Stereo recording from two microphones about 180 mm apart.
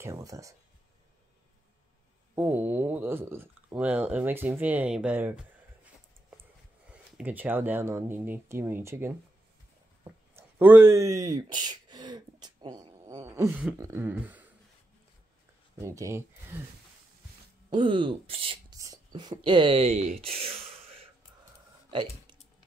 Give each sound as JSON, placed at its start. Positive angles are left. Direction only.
{"t": 0.0, "sound": "speech", "side_deg": -15}
{"t": 2.3, "sound": "speech", "side_deg": -10}
{"t": 6.9, "sound": "speech", "side_deg": -10}
{"t": 15.8, "sound": "speech", "side_deg": -15}
{"t": 17.6, "sound": "speech", "side_deg": -25}
{"t": 18.8, "sound": "a sound", "side_deg": -20}
{"t": 19.4, "sound": "speech", "side_deg": -25}